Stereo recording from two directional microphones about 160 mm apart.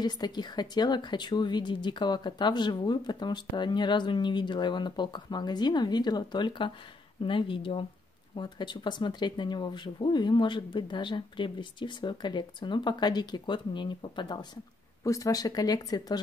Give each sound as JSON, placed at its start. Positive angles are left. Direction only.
{"t": 0.0, "sound": "a woman's voice", "side_deg": 25}